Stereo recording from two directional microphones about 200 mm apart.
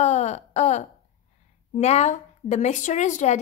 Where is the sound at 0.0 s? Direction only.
35° left (ahead or behind).